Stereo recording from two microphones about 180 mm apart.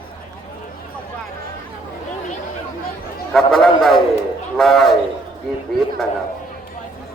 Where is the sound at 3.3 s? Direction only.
5° left (ahead or behind).